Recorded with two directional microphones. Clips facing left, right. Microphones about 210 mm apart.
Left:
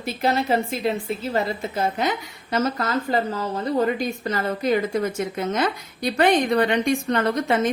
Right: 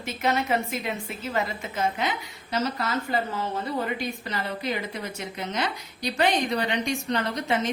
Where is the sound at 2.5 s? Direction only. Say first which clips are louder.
Left 4 dB; 45° left (ahead or behind).